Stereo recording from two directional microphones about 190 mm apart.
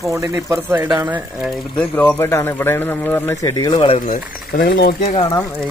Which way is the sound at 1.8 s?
10° left (ahead or behind).